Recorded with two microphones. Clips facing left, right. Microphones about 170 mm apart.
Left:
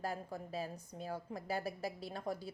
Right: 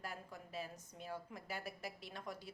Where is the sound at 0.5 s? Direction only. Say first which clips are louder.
Left 3 dB; 35° left (ahead or behind).